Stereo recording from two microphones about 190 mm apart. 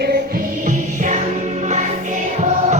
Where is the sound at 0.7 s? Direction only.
40° right (ahead or behind).